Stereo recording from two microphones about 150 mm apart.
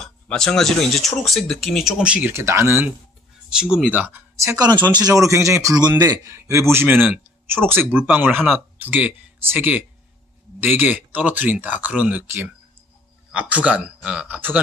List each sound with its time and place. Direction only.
0.0 s a man's voice: 5° left (ahead or behind); by 14.6 s 10° right (ahead or behind)